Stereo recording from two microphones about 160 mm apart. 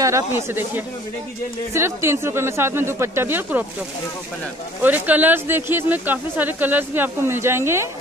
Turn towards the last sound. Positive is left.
turn(degrees=-15)  # may be behind; listen again after turning